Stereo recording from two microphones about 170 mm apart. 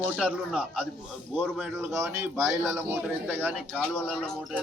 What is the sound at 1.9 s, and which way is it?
A man's voice, 15° right (ahead or behind).